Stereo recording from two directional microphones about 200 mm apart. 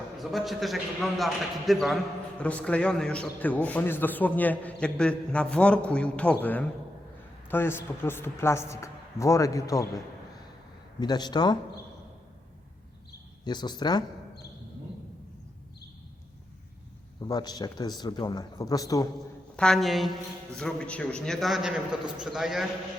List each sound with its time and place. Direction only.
0.2 s a man's voice: centre (ahead or behind); by 9.8 s 15° left (ahead or behind)
11.0 s speech: 20° left (ahead or behind)
13.4 s speech: 20° left (ahead or behind)
17.2 s speech: 20° left (ahead or behind)
19.5 s a man's voice: centre (ahead or behind)